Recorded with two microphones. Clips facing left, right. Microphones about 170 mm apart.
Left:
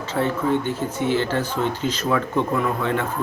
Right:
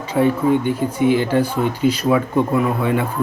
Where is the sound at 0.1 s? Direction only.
10° right (ahead or behind).